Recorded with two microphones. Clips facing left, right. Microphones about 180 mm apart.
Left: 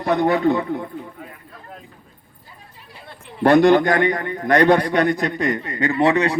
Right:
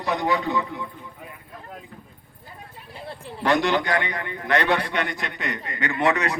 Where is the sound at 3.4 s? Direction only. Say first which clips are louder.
Left 9 dB; 50° left (ahead or behind); by 6.3 s 30° left (ahead or behind).